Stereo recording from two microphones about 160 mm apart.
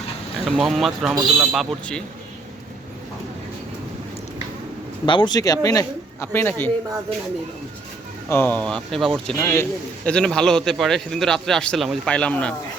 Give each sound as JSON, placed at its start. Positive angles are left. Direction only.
{"t": 0.4, "sound": "a man's voice", "side_deg": 0}
{"t": 5.0, "sound": "speech", "side_deg": 30}
{"t": 8.3, "sound": "a man's voice", "side_deg": 10}
{"t": 9.2, "sound": "a man's voice", "side_deg": 15}